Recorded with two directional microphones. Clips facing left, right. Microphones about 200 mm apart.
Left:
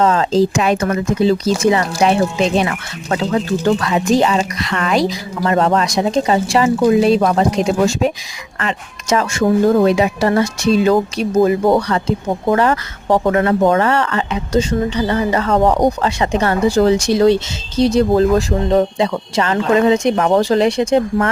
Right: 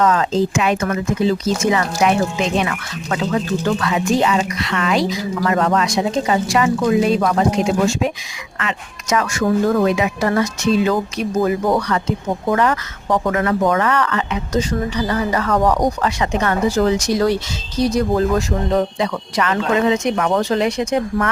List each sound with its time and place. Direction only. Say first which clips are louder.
0.0 s a woman's voice: left 3 dB; 30° left (ahead or behind)